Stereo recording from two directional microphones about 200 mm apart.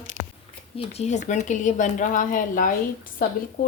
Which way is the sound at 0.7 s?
30° left (ahead or behind).